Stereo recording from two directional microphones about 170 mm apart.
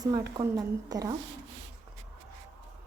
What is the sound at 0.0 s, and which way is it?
A woman's voice, 20° right (ahead or behind).